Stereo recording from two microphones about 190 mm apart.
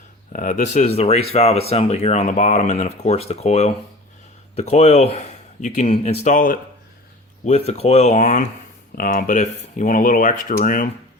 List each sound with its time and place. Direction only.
0.3 s speech: 40° left (ahead or behind)